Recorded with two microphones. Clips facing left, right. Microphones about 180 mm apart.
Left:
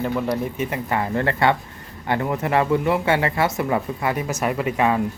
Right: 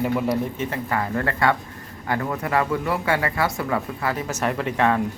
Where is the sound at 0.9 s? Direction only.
25° left (ahead or behind); by 5.0 s 10° left (ahead or behind).